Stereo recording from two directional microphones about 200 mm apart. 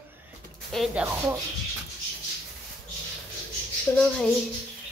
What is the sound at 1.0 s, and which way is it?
Speech, 10° right (ahead or behind).